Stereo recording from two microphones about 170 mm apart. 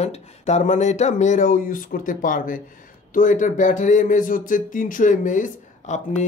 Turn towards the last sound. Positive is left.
turn(degrees=45)  # may be behind; listen again after turning